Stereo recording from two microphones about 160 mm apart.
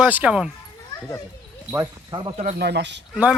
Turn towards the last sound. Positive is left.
turn(degrees=-5)  # may be behind; listen again after turning